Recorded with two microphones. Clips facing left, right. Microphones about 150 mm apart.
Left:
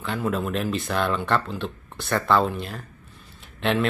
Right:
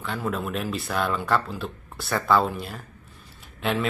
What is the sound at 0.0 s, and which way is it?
Speech, centre (ahead or behind).